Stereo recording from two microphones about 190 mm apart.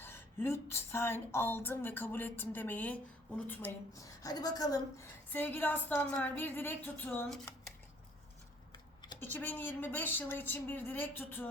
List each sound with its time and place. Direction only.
0.0 s a woman's voice: 10° left (ahead or behind)
8.7 s a sound: 20° left (ahead or behind)
9.2 s a woman's voice: 10° left (ahead or behind)